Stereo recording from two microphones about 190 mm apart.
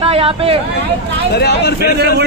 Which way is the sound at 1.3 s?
60° left (ahead or behind).